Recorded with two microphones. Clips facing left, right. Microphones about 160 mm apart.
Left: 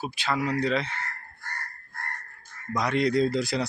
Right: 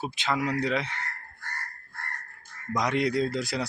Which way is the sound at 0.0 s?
20° right (ahead or behind).